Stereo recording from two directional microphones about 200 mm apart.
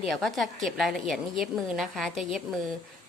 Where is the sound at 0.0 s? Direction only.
Centre (ahead or behind).